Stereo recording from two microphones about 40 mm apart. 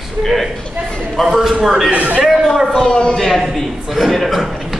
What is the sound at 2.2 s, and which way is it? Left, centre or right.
Speech, centre.